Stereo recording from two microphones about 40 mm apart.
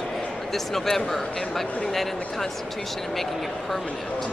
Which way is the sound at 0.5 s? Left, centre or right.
Centre.